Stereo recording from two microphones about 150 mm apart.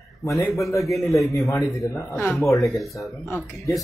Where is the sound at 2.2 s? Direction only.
Centre (ahead or behind).